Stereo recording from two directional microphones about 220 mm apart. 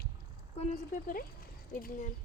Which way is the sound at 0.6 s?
40° left (ahead or behind).